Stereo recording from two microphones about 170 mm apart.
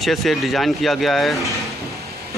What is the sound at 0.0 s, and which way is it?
Speech, centre (ahead or behind).